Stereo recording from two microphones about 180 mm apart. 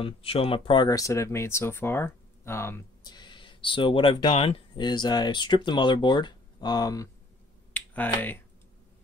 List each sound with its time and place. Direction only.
0.0 s speech: 30° left (ahead or behind)
7.7 s finger snapping: 10° left (ahead or behind)